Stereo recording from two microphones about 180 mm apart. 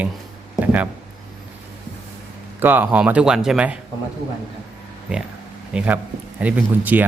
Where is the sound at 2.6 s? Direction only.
10° right (ahead or behind).